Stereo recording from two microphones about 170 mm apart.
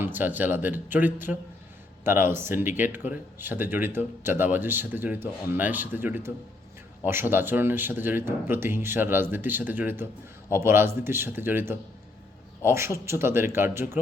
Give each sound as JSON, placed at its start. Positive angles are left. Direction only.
{"t": 0.0, "sound": "speech", "side_deg": -10}